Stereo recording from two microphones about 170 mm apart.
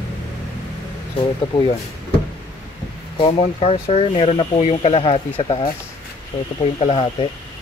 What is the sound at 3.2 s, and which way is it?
Speech, 35° left (ahead or behind).